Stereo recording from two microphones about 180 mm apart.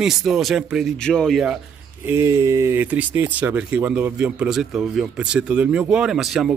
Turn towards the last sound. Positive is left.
turn(degrees=0)  # may be behind; listen again after turning